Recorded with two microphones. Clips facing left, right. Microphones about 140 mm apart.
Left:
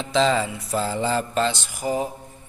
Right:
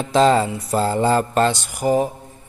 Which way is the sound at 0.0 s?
45° right (ahead or behind).